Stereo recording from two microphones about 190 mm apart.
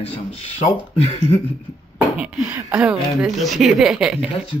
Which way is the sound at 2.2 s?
5° right (ahead or behind).